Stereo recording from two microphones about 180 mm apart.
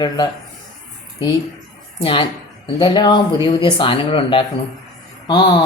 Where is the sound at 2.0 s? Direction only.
30° left (ahead or behind).